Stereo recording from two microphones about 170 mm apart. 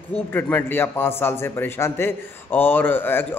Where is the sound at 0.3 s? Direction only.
10° left (ahead or behind).